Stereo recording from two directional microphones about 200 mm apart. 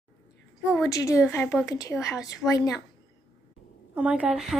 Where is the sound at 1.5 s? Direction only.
5° right (ahead or behind).